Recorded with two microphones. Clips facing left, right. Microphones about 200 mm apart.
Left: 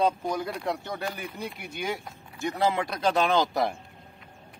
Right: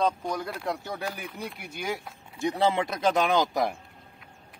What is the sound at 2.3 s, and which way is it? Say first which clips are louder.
Speech: right 1 dB; 25° right (ahead or behind).